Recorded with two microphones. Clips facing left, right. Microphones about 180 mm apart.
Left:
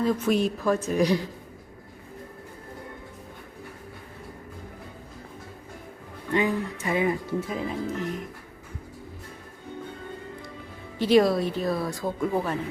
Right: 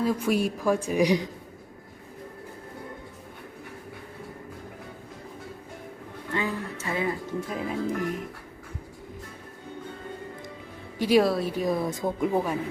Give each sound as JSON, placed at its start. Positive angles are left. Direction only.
{"t": 0.0, "sound": "a woman's voice", "side_deg": -10}
{"t": 6.3, "sound": "speech", "side_deg": 15}
{"t": 7.4, "sound": "speech", "side_deg": 0}
{"t": 7.9, "sound": "a woman's voice", "side_deg": -15}
{"t": 10.9, "sound": "a woman's voice", "side_deg": -10}